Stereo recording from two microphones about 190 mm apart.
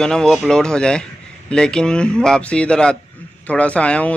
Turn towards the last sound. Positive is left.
turn(degrees=5)  # may be behind; listen again after turning